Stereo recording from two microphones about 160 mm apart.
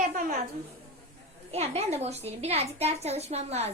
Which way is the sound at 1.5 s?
40° right (ahead or behind).